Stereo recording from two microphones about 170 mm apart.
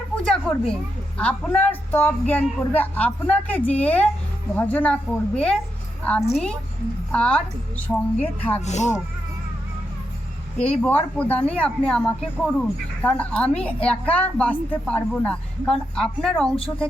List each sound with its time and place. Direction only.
0.3 s speech: 5° left (ahead or behind)
8.6 s speech: 45° left (ahead or behind)
10.6 s speech: 10° left (ahead or behind)